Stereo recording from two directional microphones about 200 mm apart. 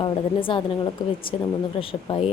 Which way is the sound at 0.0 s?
25° left (ahead or behind).